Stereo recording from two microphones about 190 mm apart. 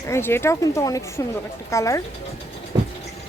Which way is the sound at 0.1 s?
10° left (ahead or behind).